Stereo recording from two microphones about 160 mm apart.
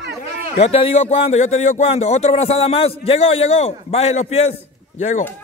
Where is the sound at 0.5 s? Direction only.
40° left (ahead or behind).